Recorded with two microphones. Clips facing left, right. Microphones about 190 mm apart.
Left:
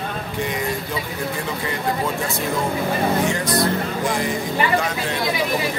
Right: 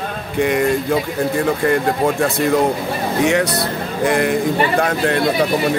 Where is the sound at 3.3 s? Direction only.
70° right (ahead or behind).